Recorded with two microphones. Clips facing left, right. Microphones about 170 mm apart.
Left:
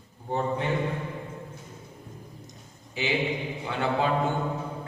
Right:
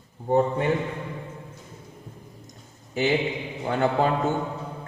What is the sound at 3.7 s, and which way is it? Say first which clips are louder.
Speech: right 5 dB; 45° right (ahead or behind).